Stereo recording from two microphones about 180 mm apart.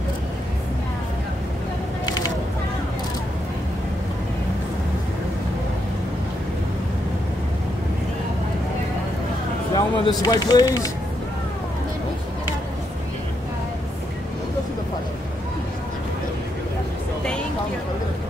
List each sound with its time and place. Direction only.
9.8 s speech: 25° left (ahead or behind)